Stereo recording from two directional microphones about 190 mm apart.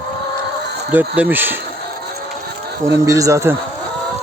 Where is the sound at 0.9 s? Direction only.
10° right (ahead or behind).